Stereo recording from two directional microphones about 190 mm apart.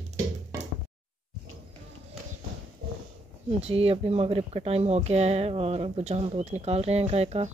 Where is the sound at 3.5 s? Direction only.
30° right (ahead or behind).